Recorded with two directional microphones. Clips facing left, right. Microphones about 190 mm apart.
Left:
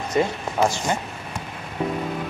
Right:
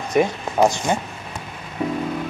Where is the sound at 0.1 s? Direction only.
15° right (ahead or behind).